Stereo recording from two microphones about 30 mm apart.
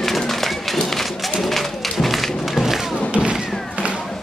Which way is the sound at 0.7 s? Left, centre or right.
Centre.